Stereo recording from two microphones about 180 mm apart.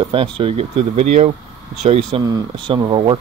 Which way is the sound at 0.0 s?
30° right (ahead or behind).